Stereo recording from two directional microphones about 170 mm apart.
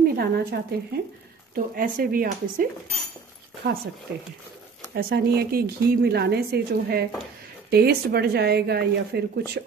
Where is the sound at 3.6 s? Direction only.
75° right (ahead or behind).